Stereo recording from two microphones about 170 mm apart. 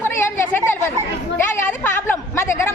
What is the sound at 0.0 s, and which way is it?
Chatter, 15° left (ahead or behind).